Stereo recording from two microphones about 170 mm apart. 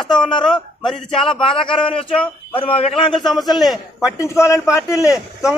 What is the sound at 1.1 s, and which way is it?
Speech, 30° left (ahead or behind).